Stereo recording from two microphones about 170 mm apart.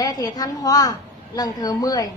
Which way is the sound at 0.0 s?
25° left (ahead or behind).